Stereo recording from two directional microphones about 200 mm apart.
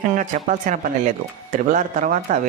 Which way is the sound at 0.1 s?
40° right (ahead or behind).